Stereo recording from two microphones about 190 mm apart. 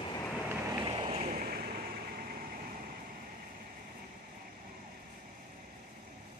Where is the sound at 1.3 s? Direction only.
50° right (ahead or behind).